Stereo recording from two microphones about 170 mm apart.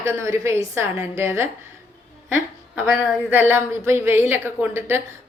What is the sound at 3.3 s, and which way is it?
A woman's voice, 10° right (ahead or behind).